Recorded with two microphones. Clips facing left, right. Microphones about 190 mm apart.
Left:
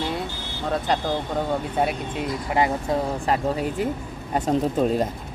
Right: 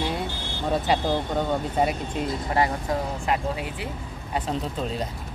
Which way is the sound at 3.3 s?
40° left (ahead or behind).